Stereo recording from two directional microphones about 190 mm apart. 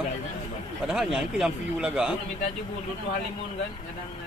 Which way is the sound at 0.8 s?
5° right (ahead or behind).